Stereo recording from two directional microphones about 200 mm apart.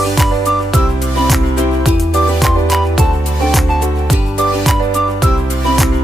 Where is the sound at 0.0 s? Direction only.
Centre (ahead or behind).